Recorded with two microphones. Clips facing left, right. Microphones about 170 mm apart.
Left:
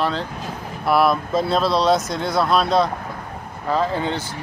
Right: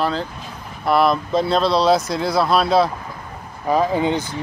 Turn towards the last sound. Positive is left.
turn(degrees=-15)  # may be behind; listen again after turning